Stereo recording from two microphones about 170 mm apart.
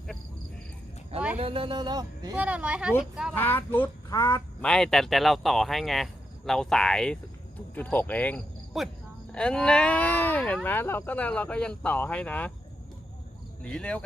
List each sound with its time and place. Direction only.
1.4 s speech: 30° right (ahead or behind)
2.3 s speech: 5° right (ahead or behind)
3.3 s speech: 10° left (ahead or behind)
4.2 s speech: 20° left (ahead or behind)
4.6 s speech: 5° left (ahead or behind)
13.6 s speech: 5° left (ahead or behind)